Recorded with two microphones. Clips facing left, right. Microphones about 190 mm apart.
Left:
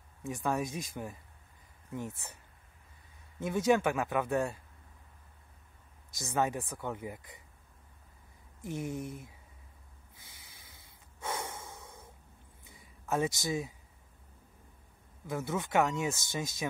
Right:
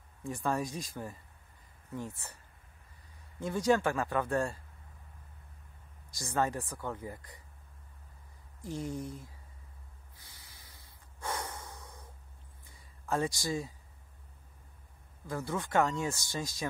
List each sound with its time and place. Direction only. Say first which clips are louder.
0.5 s speech: even; 20° left (ahead or behind)
3.3 s speech: left 1 dB; 20° left (ahead or behind)
6.1 s speech: even; 20° left (ahead or behind)
8.6 s speech: left 1 dB; 20° left (ahead or behind)
11.1 s snort: even; 25° left (ahead or behind)
13.1 s speech: left 1 dB; 20° left (ahead or behind)
15.2 s speech: left 1 dB; 20° left (ahead or behind)